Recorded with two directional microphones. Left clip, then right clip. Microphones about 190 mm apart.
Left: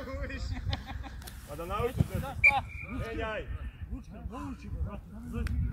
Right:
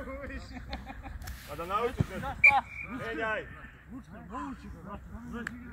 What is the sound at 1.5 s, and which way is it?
Speech, centre (ahead or behind).